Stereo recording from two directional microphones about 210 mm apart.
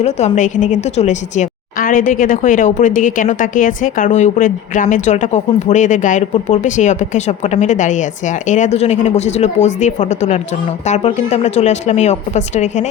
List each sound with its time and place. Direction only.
0.0 s a woman's voice: 35° left (ahead or behind)